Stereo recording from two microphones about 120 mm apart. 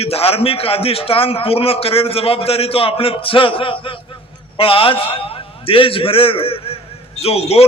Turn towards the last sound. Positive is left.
turn(degrees=55)  # may be behind; listen again after turning